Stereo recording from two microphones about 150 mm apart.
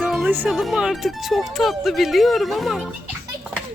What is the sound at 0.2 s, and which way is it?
Speech, 15° right (ahead or behind).